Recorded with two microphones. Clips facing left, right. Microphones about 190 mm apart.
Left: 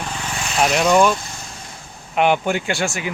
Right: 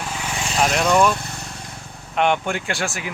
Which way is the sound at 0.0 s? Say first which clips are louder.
Even; 10° right (ahead or behind).